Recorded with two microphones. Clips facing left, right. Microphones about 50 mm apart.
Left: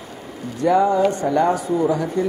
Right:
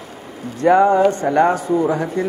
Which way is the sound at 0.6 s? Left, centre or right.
Right.